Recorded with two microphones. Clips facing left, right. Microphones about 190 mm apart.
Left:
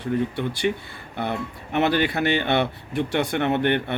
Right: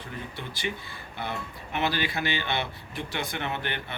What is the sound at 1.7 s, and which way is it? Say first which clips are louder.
Speech: left 8 dB; 60° left (ahead or behind).